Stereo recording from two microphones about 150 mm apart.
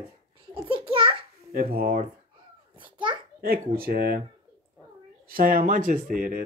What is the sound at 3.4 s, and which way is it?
Speech, 85° right.